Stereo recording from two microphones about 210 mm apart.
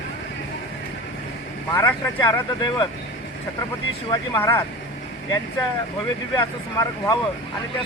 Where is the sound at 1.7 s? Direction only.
15° left (ahead or behind).